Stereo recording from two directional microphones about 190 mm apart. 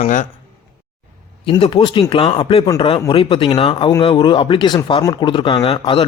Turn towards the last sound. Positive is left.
turn(degrees=30)  # may be behind; listen again after turning